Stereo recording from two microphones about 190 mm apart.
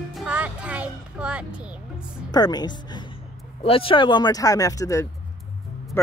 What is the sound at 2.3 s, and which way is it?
Speech, 20° left (ahead or behind).